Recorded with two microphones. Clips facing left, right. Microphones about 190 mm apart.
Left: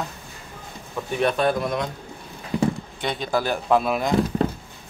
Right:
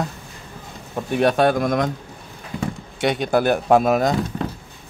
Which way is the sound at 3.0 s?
70° right (ahead or behind).